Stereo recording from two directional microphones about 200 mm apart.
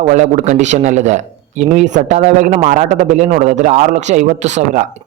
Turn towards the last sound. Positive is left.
turn(degrees=-35)  # may be behind; listen again after turning